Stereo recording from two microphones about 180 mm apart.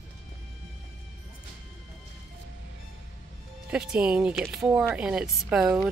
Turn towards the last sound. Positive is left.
turn(degrees=-5)  # may be behind; listen again after turning